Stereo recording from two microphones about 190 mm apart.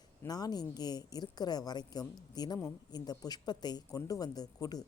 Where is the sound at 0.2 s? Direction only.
20° left (ahead or behind).